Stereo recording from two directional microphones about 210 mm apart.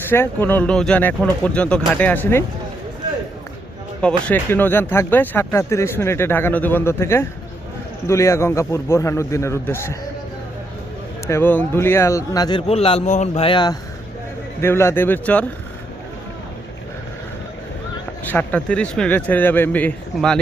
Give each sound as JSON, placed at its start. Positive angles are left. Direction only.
{"t": 0.1, "sound": "speech", "side_deg": 10}
{"t": 4.3, "sound": "speech", "side_deg": 10}
{"t": 11.3, "sound": "a man's voice", "side_deg": 10}
{"t": 14.6, "sound": "speech", "side_deg": 10}
{"t": 18.3, "sound": "speech", "side_deg": 5}